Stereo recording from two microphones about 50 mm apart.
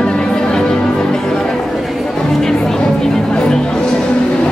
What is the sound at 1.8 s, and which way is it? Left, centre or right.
Chatter, centre.